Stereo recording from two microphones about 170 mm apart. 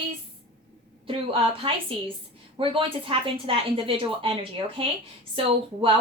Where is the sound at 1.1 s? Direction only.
30° right (ahead or behind).